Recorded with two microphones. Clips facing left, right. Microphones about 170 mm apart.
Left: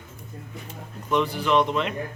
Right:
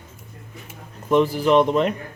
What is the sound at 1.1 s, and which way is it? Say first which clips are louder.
Speech: right 5 dB; 40° right (ahead or behind).